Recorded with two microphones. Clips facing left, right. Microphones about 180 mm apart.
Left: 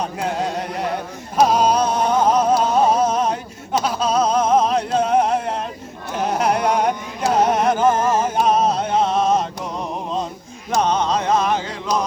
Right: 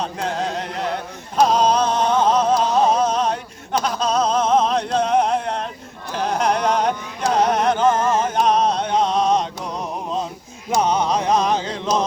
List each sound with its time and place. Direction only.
0.0 s a sound: 10° left (ahead or behind)
6.1 s music: 5° left (ahead or behind)
10.7 s music: 10° right (ahead or behind)